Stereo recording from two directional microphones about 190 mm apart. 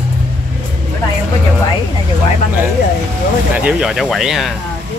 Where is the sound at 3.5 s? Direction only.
5° right (ahead or behind).